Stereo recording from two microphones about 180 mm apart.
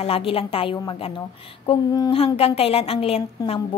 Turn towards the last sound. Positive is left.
turn(degrees=20)  # may be behind; listen again after turning